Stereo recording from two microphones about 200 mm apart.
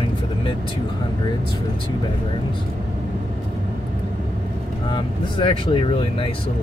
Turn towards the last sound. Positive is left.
turn(degrees=25)  # may be behind; listen again after turning